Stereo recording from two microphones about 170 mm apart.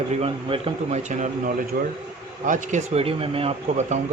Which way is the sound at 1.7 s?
60° right (ahead or behind).